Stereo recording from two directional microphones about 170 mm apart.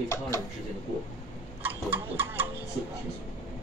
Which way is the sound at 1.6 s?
10° right (ahead or behind).